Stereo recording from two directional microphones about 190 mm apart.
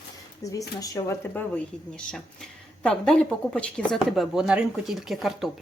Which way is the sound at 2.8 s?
5° left (ahead or behind).